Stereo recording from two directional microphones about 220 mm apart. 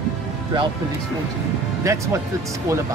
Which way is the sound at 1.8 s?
15° right (ahead or behind).